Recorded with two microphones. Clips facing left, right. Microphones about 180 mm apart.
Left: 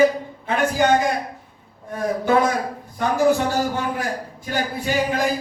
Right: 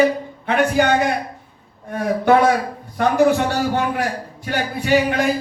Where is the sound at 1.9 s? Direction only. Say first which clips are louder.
Right 4 dB; 65° right (ahead or behind).